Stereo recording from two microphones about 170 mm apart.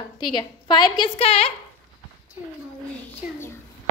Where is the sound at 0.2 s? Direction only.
25° left (ahead or behind).